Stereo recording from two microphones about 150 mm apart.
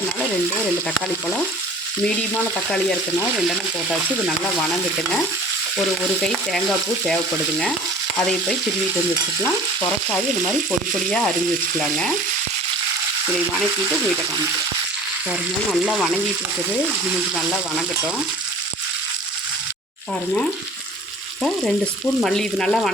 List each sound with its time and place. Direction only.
2.0 s frying: 5° left (ahead or behind)
6.2 s frying: centre (ahead or behind)
10.7 s frying: 10° left (ahead or behind)
15.7 s frying: 5° left (ahead or behind)
22.2 s frying: 5° left (ahead or behind)